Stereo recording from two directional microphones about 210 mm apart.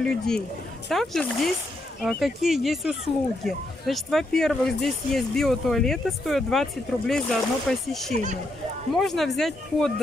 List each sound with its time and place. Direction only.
0.0 s speech: 5° left (ahead or behind)
8.1 s speech: 35° right (ahead or behind)
8.9 s speech: centre (ahead or behind)